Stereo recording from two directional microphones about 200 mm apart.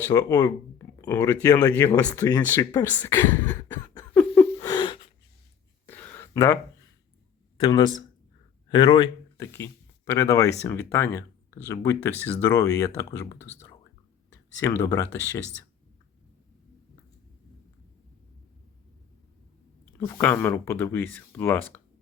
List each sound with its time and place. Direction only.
0.0 s speech: 15° left (ahead or behind)
4.5 s a sound: 20° left (ahead or behind)
5.9 s a sound: 10° left (ahead or behind)
7.6 s speech: 20° left (ahead or behind)
9.4 s speech: 10° left (ahead or behind)
14.6 s speech: 15° left (ahead or behind)
20.0 s speech: 10° left (ahead or behind)